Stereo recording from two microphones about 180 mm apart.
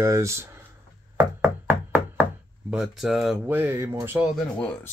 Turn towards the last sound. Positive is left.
turn(degrees=5)  # may be behind; listen again after turning